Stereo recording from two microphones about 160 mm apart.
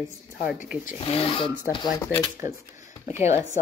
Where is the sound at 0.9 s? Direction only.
35° left (ahead or behind).